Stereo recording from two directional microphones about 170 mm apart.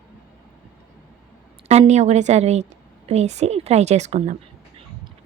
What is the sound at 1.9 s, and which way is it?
Speech, 40° right (ahead or behind).